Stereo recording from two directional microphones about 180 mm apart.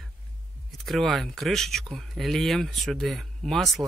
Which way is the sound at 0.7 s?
Centre (ahead or behind).